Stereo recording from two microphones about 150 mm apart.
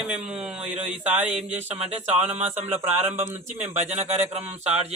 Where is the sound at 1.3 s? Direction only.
50° right (ahead or behind).